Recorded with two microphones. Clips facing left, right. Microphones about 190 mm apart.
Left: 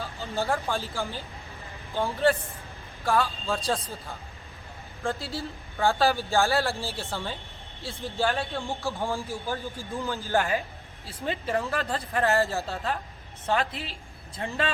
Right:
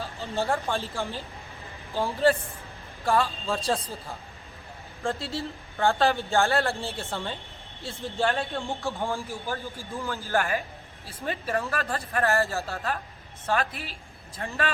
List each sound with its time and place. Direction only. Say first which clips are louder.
0.0 s speech: right 1 dB; centre (ahead or behind)
9.3 s speech: left 1 dB; 15° left (ahead or behind)